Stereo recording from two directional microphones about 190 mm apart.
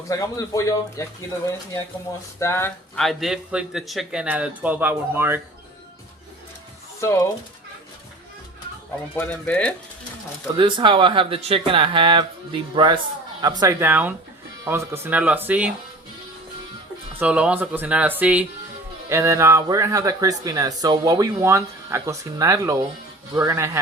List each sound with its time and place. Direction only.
0.1 s speech: 15° left (ahead or behind)
2.4 s speech: 15° left (ahead or behind); by 5.4 s 10° right (ahead or behind)
7.0 s speech: 15° left (ahead or behind)
9.1 s speech: 10° left (ahead or behind)
10.6 s speech: 25° right (ahead or behind); by 15.7 s 10° right (ahead or behind)
17.2 s speech: 5° right (ahead or behind)